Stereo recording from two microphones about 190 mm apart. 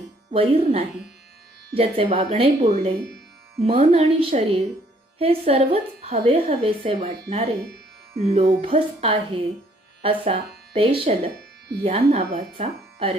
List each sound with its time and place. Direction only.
0.3 s a woman's voice: 30° right (ahead or behind)
7.0 s speech: 55° right (ahead or behind)
7.3 s a woman's voice: 35° right (ahead or behind)